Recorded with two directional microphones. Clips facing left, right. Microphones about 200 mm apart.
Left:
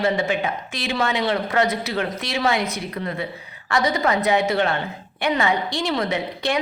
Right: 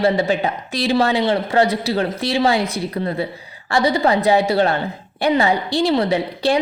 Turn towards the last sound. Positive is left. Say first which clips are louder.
# right 6 dB
turn(degrees=-30)  # may be behind; listen again after turning